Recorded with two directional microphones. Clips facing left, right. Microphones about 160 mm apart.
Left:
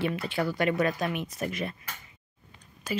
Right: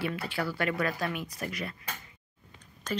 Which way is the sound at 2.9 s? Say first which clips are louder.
Left 2 dB; 10° left (ahead or behind).